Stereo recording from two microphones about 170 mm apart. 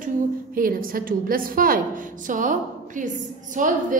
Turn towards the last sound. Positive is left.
turn(degrees=-50)  # may be behind; listen again after turning